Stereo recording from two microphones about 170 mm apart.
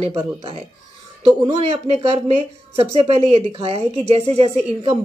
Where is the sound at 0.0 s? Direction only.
35° right (ahead or behind).